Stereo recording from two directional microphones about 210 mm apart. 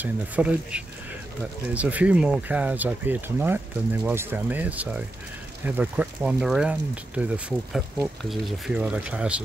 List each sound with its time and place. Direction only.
0.0 s speech: 5° right (ahead or behind)